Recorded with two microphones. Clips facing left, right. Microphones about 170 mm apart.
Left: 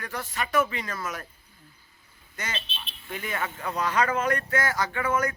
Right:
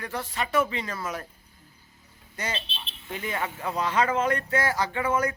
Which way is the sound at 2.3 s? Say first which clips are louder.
Right 3 dB; 30° right (ahead or behind).